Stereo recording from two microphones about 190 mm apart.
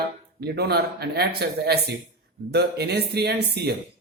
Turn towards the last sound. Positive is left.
turn(degrees=-60)  # may be behind; listen again after turning